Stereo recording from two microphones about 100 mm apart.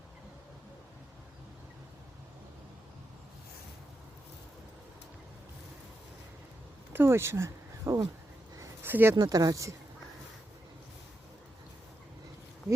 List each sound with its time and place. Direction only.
6.9 s speech: 25° right (ahead or behind)
8.8 s a sound: 20° right (ahead or behind)
9.1 s speech: 35° right (ahead or behind)